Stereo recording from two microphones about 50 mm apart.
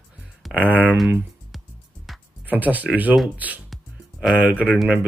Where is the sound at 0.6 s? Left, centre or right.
Right.